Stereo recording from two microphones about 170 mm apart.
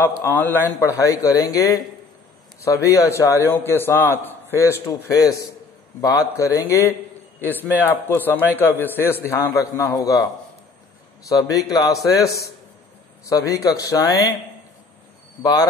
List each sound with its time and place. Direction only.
0.2 s a man's voice: 10° left (ahead or behind)
11.2 s speech: 20° left (ahead or behind)